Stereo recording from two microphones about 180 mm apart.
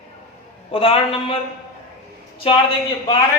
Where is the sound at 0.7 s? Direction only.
30° left (ahead or behind).